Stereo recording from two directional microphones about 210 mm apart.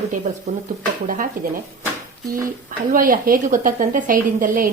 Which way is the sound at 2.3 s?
40° right (ahead or behind).